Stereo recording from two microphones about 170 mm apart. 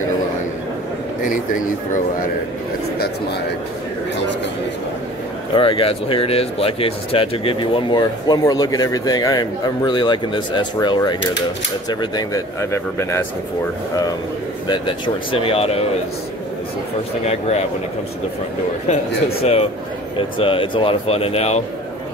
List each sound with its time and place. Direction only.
1.2 s speech: 50° left (ahead or behind)
5.5 s speech: 30° left (ahead or behind); by 13.2 s 15° left (ahead or behind)
14.7 s speech: 30° left (ahead or behind)
17.3 s speech: 40° left (ahead or behind)
18.9 s speech: 35° left (ahead or behind)